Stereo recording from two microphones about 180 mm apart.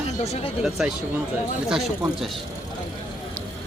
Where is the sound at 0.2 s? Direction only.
35° left (ahead or behind).